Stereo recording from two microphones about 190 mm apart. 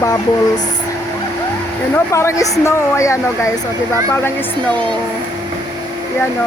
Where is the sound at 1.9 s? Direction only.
15° left (ahead or behind).